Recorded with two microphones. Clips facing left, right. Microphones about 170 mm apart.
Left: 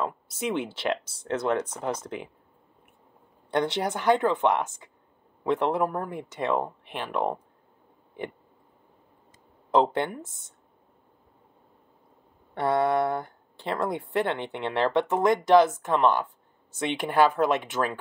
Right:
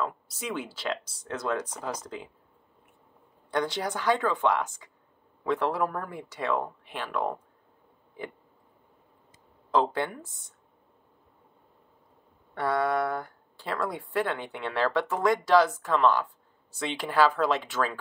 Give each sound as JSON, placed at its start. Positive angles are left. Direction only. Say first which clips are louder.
{"t": 0.0, "sound": "speech", "louder": "left 3 dB", "side_deg": 25}
{"t": 3.4, "sound": "speech", "louder": "left 3 dB", "side_deg": 25}
{"t": 9.7, "sound": "speech", "louder": "left 3 dB", "side_deg": 20}
{"t": 12.5, "sound": "speech", "louder": "left 3 dB", "side_deg": 25}